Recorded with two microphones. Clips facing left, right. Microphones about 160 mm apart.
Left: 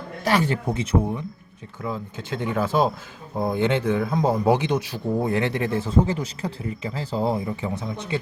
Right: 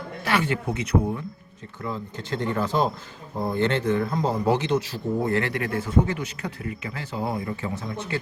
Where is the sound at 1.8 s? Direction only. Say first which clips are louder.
Left 2 dB; 10° left (ahead or behind); by 7.4 s 30° left (ahead or behind).